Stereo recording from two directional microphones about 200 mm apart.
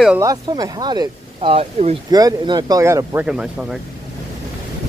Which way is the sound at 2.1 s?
20° right (ahead or behind).